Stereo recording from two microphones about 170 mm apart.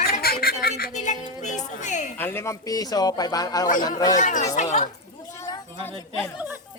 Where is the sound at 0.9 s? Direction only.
45° left (ahead or behind).